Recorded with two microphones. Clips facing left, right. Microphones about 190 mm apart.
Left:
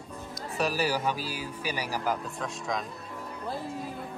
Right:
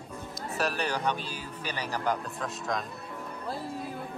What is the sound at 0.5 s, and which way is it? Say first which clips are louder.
Speech: left 2 dB; centre (ahead or behind).